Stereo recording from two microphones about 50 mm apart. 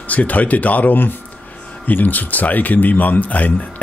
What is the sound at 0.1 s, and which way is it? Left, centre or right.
Speech, left.